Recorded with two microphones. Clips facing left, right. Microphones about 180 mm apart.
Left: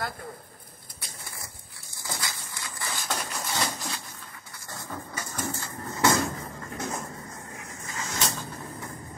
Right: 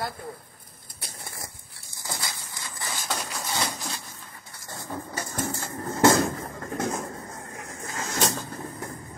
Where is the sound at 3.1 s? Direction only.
Centre (ahead or behind).